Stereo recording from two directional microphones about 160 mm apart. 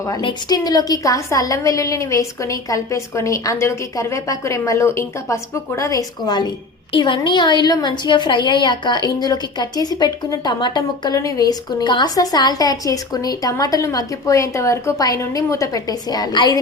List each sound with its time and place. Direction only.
0.0 s a woman's voice: 25° left (ahead or behind)